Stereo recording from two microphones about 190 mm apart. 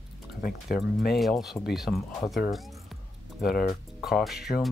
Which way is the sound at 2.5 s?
Centre (ahead or behind).